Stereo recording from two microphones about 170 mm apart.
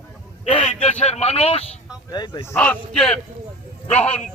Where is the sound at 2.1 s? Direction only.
25° left (ahead or behind).